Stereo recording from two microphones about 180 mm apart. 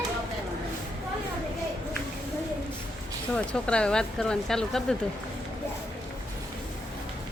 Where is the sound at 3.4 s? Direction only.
5° left (ahead or behind).